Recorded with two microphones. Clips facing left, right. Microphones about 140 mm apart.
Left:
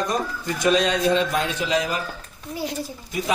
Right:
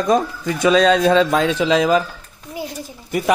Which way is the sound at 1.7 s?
90° right.